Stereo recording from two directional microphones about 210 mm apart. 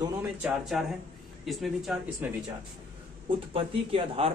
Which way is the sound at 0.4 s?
5° right (ahead or behind).